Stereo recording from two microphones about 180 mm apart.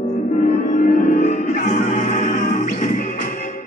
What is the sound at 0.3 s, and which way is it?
Music, 40° left (ahead or behind).